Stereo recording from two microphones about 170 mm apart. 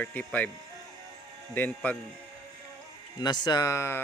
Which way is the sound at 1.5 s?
10° left (ahead or behind).